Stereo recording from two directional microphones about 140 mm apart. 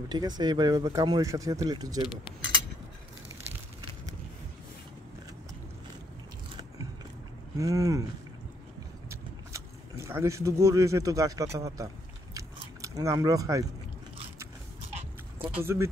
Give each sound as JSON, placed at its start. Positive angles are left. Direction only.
{"t": 0.1, "sound": "speech", "side_deg": -30}
{"t": 7.5, "sound": "speech", "side_deg": -25}
{"t": 9.1, "sound": "speech", "side_deg": -20}
{"t": 12.4, "sound": "biting", "side_deg": -25}
{"t": 15.5, "sound": "speech", "side_deg": -20}